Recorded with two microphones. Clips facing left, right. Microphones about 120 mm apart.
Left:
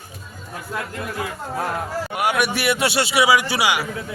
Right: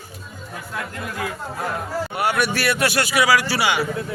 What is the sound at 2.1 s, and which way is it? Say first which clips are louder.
Speech: left 1 dB; 10° left (ahead or behind).